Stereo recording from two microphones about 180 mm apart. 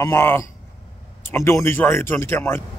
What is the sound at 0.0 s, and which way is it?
Speech, 15° left (ahead or behind).